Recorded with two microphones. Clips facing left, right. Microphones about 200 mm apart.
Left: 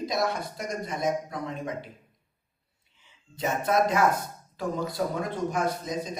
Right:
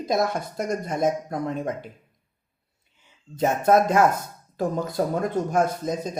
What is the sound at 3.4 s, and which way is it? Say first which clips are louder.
Speech: right 6 dB; 50° right (ahead or behind).